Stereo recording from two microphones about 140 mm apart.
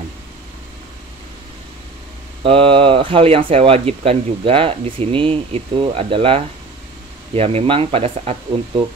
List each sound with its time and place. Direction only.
2.4 s speech: 40° right (ahead or behind)